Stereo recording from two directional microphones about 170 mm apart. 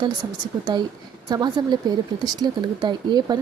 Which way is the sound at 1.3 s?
25° right (ahead or behind).